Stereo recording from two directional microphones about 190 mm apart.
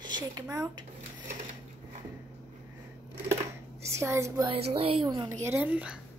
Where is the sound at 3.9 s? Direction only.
15° right (ahead or behind).